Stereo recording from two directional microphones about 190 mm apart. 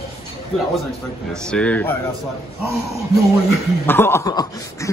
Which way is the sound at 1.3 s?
5° left (ahead or behind).